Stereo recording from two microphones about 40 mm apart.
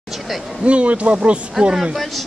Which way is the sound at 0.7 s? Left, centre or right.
Right.